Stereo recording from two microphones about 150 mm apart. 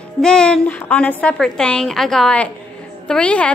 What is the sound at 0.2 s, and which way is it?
A woman's voice, 5° left (ahead or behind).